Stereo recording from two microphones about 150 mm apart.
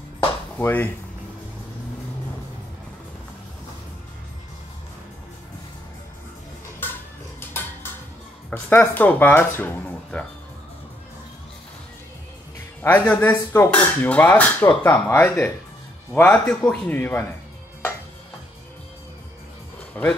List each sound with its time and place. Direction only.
0.6 s speech: 15° left (ahead or behind)
7.3 s a sound: 15° left (ahead or behind)
8.5 s speech: 15° left (ahead or behind)
12.8 s speech: 10° left (ahead or behind)
19.9 s speech: 10° left (ahead or behind)